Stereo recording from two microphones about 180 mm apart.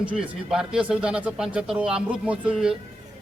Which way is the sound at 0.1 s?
5° right (ahead or behind).